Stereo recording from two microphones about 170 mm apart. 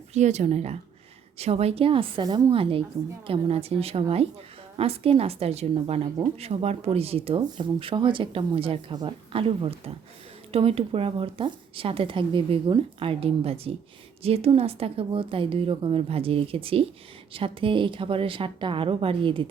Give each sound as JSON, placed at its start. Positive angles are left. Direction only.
{"t": 0.1, "sound": "speech", "side_deg": -40}